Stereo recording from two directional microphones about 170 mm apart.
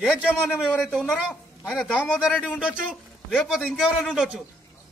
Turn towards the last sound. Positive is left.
turn(degrees=-5)  # may be behind; listen again after turning